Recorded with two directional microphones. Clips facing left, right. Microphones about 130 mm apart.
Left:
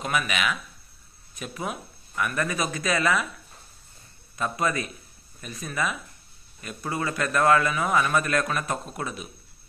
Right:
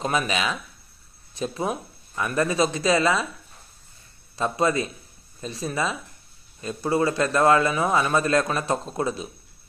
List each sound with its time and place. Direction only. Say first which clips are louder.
0.0 s a man's voice: right 3 dB; 30° right (ahead or behind)
4.4 s a man's voice: right 4 dB; 25° right (ahead or behind)